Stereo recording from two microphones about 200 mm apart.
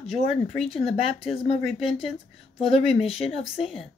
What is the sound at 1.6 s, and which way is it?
Speech, centre (ahead or behind).